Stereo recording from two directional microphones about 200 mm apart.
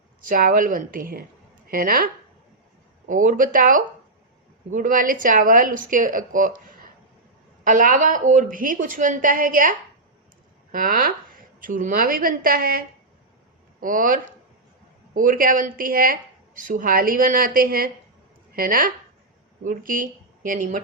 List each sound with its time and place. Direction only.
0.3 s speech: 45° right (ahead or behind)
3.1 s a woman's voice: 40° right (ahead or behind)
13.8 s a woman's voice: 45° right (ahead or behind)